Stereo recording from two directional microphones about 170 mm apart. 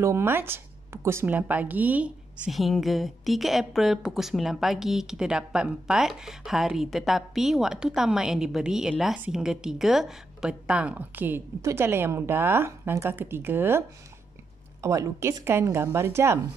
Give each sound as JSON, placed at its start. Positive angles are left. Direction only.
{"t": 0.0, "sound": "a woman's voice", "side_deg": -15}